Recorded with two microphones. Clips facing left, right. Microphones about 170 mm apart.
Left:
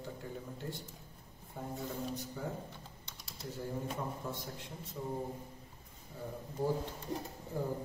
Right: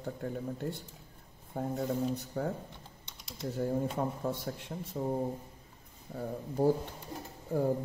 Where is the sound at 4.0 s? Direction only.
60° right (ahead or behind).